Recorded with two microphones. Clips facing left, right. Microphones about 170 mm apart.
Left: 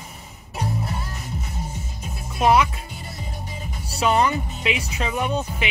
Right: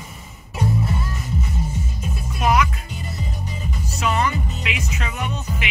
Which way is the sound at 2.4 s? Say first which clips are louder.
Left 2 dB; 30° left (ahead or behind).